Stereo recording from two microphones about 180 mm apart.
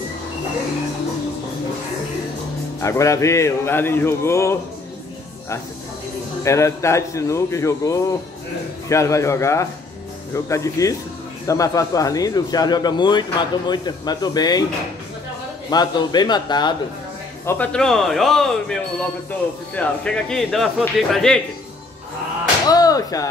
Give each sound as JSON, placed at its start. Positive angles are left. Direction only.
{"t": 2.8, "sound": "a man's voice", "side_deg": 15}
{"t": 6.4, "sound": "a man's voice", "side_deg": 15}
{"t": 15.7, "sound": "speech", "side_deg": 20}
{"t": 17.5, "sound": "a man's voice", "side_deg": 5}
{"t": 22.7, "sound": "speech", "side_deg": 20}